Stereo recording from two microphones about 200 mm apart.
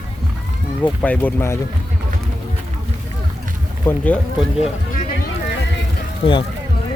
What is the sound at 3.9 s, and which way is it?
Speech, 5° left (ahead or behind).